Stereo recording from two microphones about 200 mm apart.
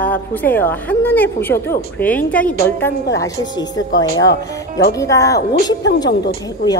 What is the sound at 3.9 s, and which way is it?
Speech, 65° left (ahead or behind).